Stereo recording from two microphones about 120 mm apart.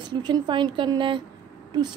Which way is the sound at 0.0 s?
40° right (ahead or behind).